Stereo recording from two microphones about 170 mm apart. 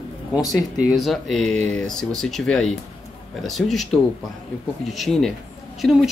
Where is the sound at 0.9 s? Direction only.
Centre (ahead or behind).